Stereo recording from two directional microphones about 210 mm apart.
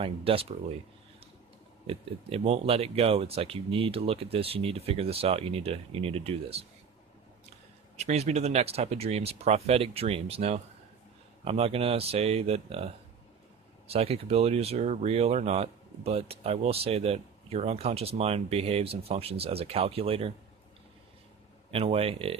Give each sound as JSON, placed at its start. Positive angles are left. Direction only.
{"t": 0.0, "sound": "speech", "side_deg": -25}
{"t": 1.9, "sound": "speech", "side_deg": -25}
{"t": 7.9, "sound": "speech", "side_deg": -30}
{"t": 13.9, "sound": "speech", "side_deg": -30}
{"t": 21.7, "sound": "speech", "side_deg": -25}